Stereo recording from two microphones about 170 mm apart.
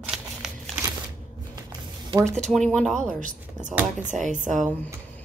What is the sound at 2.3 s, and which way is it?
Speech, centre (ahead or behind).